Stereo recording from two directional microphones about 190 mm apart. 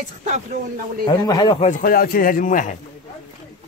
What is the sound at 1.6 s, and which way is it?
Speech, 45° left (ahead or behind).